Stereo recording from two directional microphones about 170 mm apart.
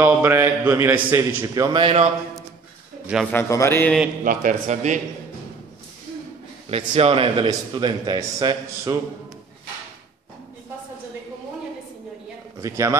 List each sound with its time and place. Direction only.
0.0 s a man's voice: 15° right (ahead or behind)
1.5 s a man's voice: 25° right (ahead or behind)
3.3 s a man's voice: 15° left (ahead or behind)
4.2 s a man's voice: 50° right (ahead or behind)
6.7 s a man's voice: 35° right (ahead or behind)
12.5 s speech: 15° right (ahead or behind)